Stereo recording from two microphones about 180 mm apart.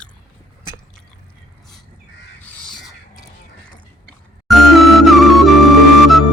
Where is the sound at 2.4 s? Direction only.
5° left (ahead or behind).